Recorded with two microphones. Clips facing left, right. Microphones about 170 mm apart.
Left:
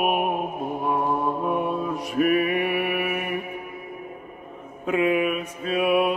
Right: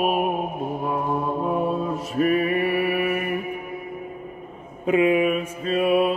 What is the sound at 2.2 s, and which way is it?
Mantra, 5° left (ahead or behind).